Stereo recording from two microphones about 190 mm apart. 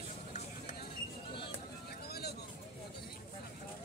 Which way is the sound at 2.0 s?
55° left (ahead or behind).